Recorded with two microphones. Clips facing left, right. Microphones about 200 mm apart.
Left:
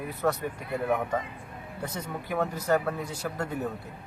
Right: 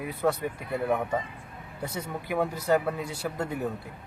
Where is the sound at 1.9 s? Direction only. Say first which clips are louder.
Right 2 dB; 10° right (ahead or behind).